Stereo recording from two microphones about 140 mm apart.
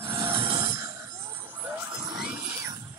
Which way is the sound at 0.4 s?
35° right (ahead or behind).